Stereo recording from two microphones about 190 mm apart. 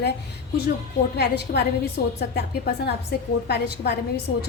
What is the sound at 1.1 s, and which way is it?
A woman's voice, 55° left (ahead or behind).